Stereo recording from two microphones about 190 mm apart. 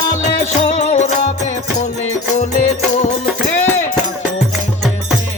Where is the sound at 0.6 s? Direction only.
35° left (ahead or behind).